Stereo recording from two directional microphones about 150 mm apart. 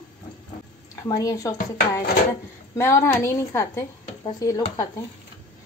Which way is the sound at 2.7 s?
15° left (ahead or behind).